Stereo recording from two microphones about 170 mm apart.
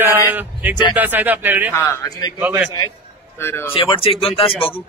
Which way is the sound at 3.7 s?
30° left (ahead or behind).